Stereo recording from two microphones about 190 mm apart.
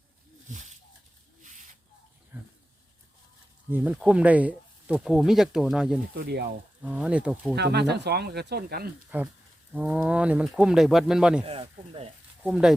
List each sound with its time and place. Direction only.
0.4 s a sound: 40° right (ahead or behind)
2.3 s a sound: 5° right (ahead or behind)
3.7 s speech: 10° right (ahead or behind)
6.1 s speech: 60° right (ahead or behind)
6.8 s speech: 5° right (ahead or behind)
7.5 s speech: 60° right (ahead or behind)
9.0 s speech: 5° right (ahead or behind)
11.4 s speech: 30° right (ahead or behind)
12.4 s speech: 5° right (ahead or behind)